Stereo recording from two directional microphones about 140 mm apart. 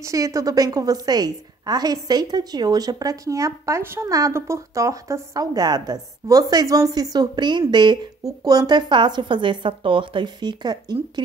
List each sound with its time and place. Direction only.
0.0 s a woman's voice: 25° right (ahead or behind)